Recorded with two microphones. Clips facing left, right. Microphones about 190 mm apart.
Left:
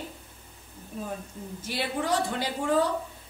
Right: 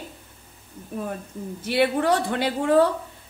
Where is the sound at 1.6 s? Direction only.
65° right (ahead or behind).